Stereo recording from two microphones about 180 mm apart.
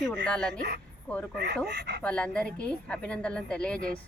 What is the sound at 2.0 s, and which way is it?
A woman's voice, 5° left (ahead or behind).